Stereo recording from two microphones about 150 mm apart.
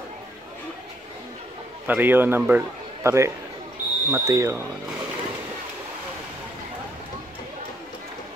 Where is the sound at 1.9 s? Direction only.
15° right (ahead or behind).